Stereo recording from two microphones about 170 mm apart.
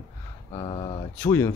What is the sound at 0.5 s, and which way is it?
Speech, 30° left (ahead or behind).